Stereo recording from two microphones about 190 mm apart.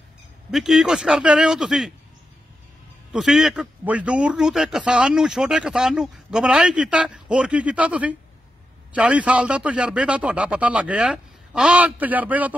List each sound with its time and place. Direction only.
0.5 s a man's voice: centre (ahead or behind)
3.1 s a man's voice: centre (ahead or behind)